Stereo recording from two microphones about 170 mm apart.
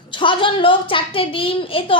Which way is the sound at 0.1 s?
30° left (ahead or behind).